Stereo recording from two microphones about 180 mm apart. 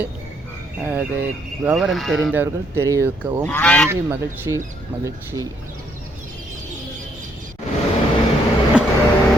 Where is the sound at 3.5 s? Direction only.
10° left (ahead or behind).